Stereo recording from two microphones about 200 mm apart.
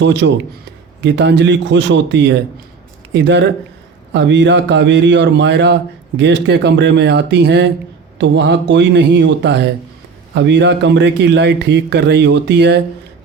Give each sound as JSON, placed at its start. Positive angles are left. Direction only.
{"t": 0.0, "sound": "a man's voice", "side_deg": -60}